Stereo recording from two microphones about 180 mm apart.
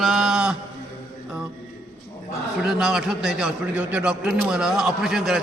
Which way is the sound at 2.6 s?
Centre (ahead or behind).